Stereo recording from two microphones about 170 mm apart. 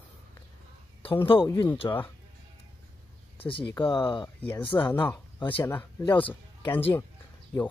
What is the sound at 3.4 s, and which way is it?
Speech, 30° left (ahead or behind).